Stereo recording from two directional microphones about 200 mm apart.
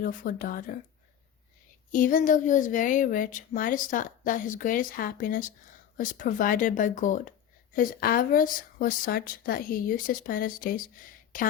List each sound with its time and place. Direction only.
0.0 s speech: 45° left (ahead or behind)
1.9 s speech: 40° left (ahead or behind)